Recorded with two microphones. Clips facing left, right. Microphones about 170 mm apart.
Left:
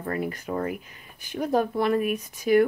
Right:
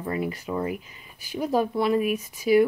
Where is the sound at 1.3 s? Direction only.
5° right (ahead or behind).